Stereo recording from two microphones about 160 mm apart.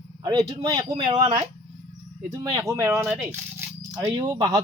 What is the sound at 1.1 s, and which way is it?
Speech, 45° right (ahead or behind).